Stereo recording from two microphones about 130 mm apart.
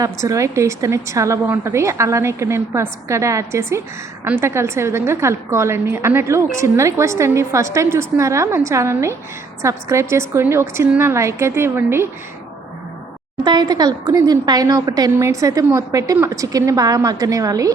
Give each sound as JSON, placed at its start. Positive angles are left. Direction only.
{"t": 0.0, "sound": "a woman's voice", "side_deg": -25}
{"t": 13.4, "sound": "a woman's voice", "side_deg": -35}